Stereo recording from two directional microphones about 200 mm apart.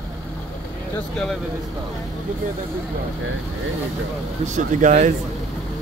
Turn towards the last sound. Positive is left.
turn(degrees=-35)  # may be behind; listen again after turning